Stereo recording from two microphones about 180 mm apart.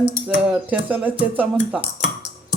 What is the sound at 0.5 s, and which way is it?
Speech, 10° right (ahead or behind).